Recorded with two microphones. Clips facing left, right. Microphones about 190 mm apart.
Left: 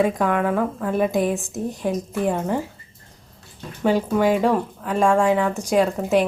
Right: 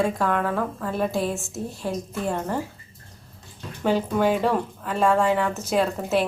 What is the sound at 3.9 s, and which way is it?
A woman's voice, 10° left (ahead or behind).